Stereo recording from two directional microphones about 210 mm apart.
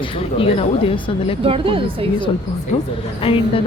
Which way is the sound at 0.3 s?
25° left (ahead or behind).